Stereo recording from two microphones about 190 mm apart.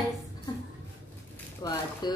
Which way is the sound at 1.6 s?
20° left (ahead or behind).